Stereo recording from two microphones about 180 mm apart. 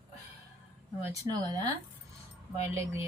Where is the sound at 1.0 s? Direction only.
20° right (ahead or behind).